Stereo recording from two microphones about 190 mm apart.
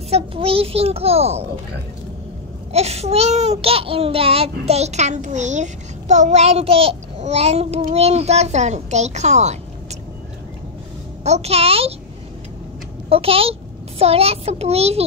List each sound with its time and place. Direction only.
0.1 s speech: 30° right (ahead or behind)
2.7 s speech: 35° right (ahead or behind)
11.2 s speech: 35° right (ahead or behind)
13.1 s a child's voice: 30° right (ahead or behind)